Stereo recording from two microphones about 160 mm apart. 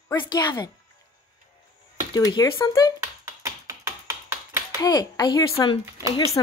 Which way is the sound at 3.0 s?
20° right (ahead or behind).